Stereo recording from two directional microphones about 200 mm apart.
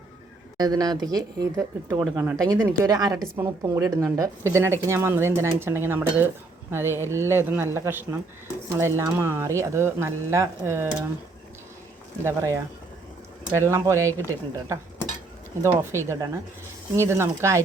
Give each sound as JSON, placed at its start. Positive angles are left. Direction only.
{"t": 0.5, "sound": "speech", "side_deg": -20}
{"t": 12.2, "sound": "speech", "side_deg": -15}